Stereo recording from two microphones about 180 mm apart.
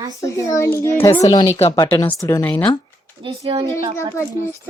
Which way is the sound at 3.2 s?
25° right (ahead or behind).